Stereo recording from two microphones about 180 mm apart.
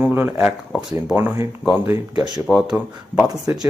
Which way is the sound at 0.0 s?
10° right (ahead or behind).